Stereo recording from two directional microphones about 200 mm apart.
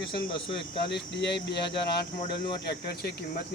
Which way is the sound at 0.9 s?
60° left (ahead or behind).